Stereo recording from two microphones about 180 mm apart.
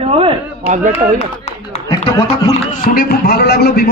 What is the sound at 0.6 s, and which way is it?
Speech, 45° right (ahead or behind).